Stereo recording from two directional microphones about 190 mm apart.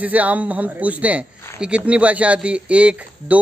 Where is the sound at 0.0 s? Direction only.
10° right (ahead or behind).